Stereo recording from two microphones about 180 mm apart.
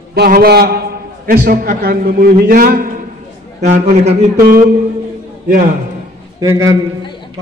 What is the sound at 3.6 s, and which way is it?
Speech, 40° right (ahead or behind).